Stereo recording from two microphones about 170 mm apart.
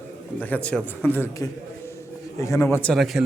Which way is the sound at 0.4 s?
10° left (ahead or behind).